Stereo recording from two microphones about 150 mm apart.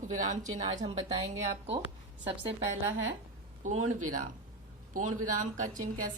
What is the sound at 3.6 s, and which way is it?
Speech, 60° right (ahead or behind).